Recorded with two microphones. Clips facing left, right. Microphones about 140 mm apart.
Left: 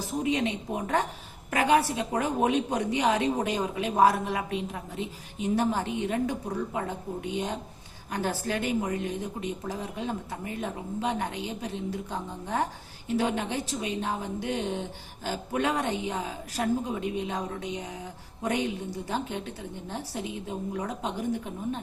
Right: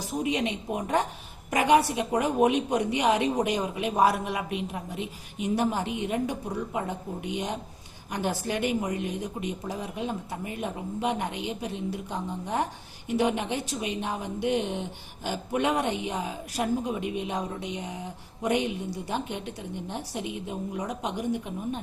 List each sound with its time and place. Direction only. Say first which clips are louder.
0.2 s a woman's voice: even; 20° right (ahead or behind)
13.1 s a woman's voice: right 2 dB; 15° right (ahead or behind)